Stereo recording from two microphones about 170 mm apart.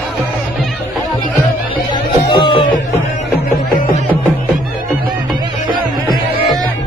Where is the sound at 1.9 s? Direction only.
25° left (ahead or behind).